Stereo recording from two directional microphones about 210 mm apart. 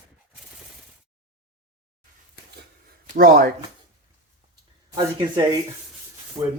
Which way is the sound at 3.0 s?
45° right (ahead or behind).